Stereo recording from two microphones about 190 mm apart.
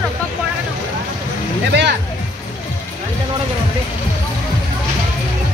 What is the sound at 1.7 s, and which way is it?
Music, 65° right (ahead or behind).